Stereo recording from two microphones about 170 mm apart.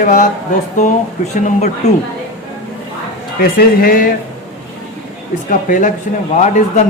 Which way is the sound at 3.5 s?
55° left (ahead or behind).